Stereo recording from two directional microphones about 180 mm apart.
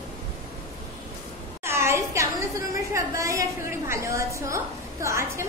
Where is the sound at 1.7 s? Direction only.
15° right (ahead or behind).